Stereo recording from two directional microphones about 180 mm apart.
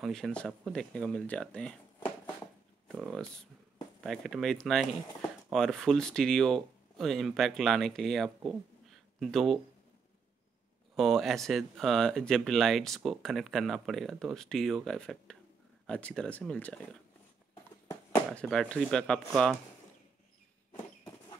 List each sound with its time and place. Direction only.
0.0 s speech: 5° left (ahead or behind)
2.9 s speech: centre (ahead or behind)
11.0 s speech: centre (ahead or behind)
17.8 s a sound: 15° left (ahead or behind)
18.4 s speech: 5° left (ahead or behind)